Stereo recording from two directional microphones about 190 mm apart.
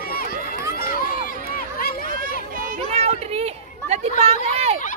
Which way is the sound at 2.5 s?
45° right (ahead or behind).